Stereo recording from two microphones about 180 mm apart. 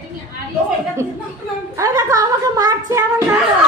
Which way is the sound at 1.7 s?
20° right (ahead or behind).